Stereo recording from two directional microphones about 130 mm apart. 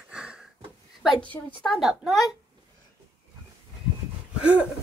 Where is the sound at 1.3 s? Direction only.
15° left (ahead or behind).